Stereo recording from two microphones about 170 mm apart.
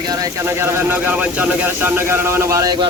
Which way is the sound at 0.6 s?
10° right (ahead or behind).